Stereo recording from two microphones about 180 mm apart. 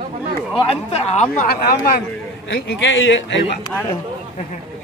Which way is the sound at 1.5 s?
60° left (ahead or behind).